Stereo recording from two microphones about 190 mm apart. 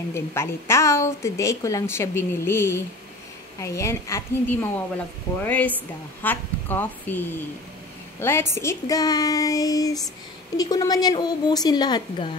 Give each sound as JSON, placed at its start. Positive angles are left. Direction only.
{"t": 0.1, "sound": "a woman's voice", "side_deg": 15}